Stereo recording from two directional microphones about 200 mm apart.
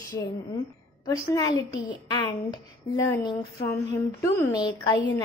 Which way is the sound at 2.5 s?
20° left (ahead or behind).